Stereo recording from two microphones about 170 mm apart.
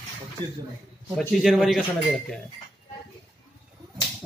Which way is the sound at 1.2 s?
Centre (ahead or behind).